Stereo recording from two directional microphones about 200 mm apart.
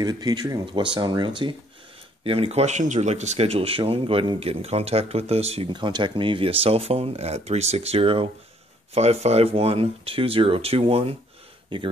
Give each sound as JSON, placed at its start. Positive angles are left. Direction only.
{"t": 0.0, "sound": "speech", "side_deg": -20}